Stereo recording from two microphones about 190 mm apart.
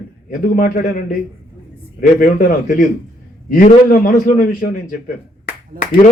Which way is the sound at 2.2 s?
45° left (ahead or behind).